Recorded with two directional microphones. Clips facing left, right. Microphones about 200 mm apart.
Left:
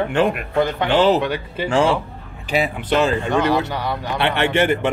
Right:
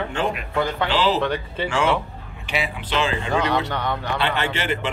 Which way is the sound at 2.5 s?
45° left (ahead or behind).